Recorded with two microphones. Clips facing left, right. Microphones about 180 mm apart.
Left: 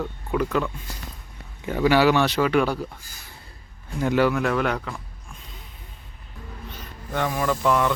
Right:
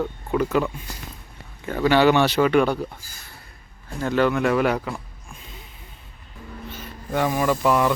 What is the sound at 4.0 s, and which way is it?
Speech, 10° left (ahead or behind).